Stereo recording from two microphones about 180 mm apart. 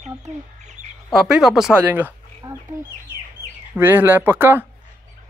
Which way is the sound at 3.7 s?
10° right (ahead or behind).